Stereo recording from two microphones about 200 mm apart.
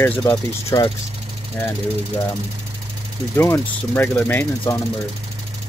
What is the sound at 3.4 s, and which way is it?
Speech, 10° left (ahead or behind).